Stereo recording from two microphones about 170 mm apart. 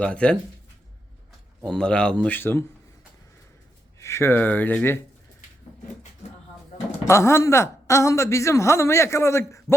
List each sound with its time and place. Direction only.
0.0 s speech: 5° left (ahead or behind)
1.6 s speech: 5° left (ahead or behind)
4.0 s a woman's voice: 15° left (ahead or behind)
7.1 s a woman's voice: 15° left (ahead or behind)